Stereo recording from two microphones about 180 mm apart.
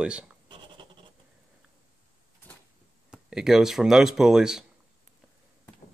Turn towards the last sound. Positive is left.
turn(degrees=-5)  # may be behind; listen again after turning